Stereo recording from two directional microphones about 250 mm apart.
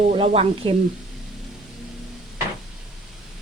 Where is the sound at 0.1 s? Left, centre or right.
Right.